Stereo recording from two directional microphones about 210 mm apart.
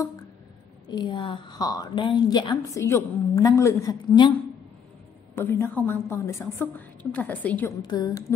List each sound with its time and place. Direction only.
0.8 s a woman's voice: 20° left (ahead or behind)
5.3 s a woman's voice: 10° left (ahead or behind)
7.8 s a woman's voice: 20° left (ahead or behind)